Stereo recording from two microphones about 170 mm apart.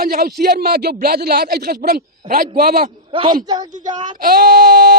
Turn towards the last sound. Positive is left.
turn(degrees=-60)  # may be behind; listen again after turning